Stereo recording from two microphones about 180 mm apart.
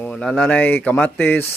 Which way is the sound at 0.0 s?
5° left (ahead or behind).